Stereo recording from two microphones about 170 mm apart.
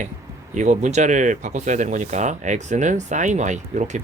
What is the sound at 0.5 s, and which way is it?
Speech, 45° right (ahead or behind).